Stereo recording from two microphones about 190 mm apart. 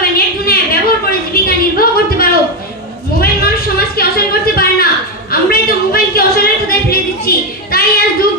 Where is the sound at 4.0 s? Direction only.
50° left (ahead or behind).